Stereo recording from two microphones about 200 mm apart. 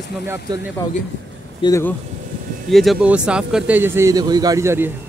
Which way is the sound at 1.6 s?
15° left (ahead or behind).